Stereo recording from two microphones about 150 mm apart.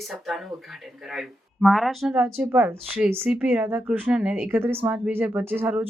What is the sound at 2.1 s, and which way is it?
Speech, 10° right (ahead or behind).